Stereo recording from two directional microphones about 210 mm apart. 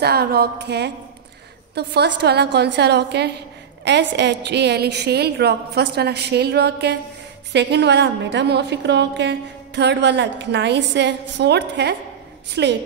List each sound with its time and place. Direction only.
0.0 s a woman's voice: 50° right (ahead or behind)